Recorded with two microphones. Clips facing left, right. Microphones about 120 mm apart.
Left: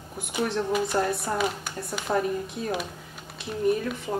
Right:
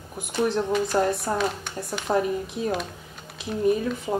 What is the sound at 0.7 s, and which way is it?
Speech, centre (ahead or behind).